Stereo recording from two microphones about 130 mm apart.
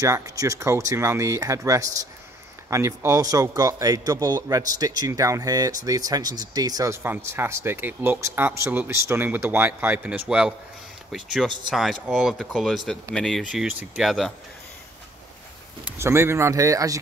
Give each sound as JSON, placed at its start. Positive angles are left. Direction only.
{"t": 0.0, "sound": "a man's voice", "side_deg": -25}
{"t": 15.8, "sound": "a man's voice", "side_deg": -20}